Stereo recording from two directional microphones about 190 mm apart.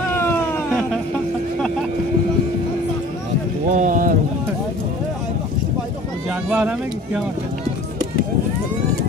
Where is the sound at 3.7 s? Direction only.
45° right (ahead or behind).